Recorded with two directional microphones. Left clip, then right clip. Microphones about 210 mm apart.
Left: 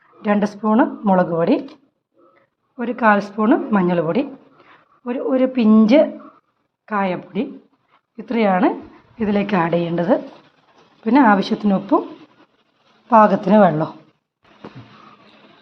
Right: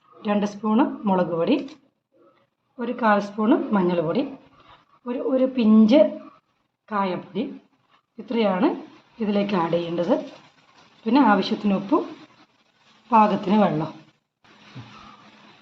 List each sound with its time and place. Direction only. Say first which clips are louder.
0.2 s a woman's voice: left 5 dB; 35° left (ahead or behind)
2.7 s a woman's voice: left 5 dB; 30° left (ahead or behind)
13.1 s a woman's voice: left 6 dB; 35° left (ahead or behind)